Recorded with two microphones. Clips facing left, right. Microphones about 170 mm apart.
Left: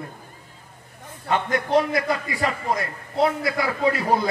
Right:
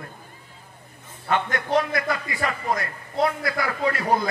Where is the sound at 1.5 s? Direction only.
20° left (ahead or behind).